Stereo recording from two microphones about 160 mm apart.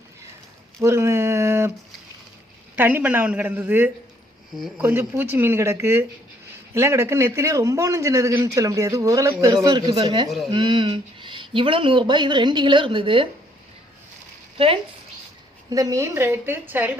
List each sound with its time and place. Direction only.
0.8 s a sound: 15° right (ahead or behind)
2.7 s speech: 10° right (ahead or behind); by 10.2 s 25° right (ahead or behind)
10.2 s speech: centre (ahead or behind)
10.5 s speech: 30° right (ahead or behind)
15.7 s speech: 20° right (ahead or behind)